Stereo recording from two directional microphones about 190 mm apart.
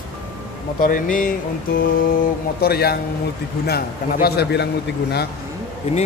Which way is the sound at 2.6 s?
55° left (ahead or behind).